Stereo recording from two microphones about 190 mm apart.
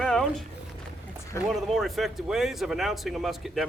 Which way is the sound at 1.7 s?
Centre (ahead or behind).